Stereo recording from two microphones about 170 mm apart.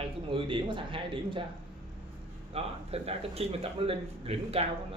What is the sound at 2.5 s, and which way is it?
Speech, 35° right (ahead or behind).